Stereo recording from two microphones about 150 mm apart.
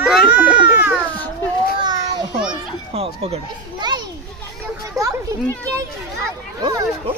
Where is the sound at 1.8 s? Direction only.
30° right (ahead or behind).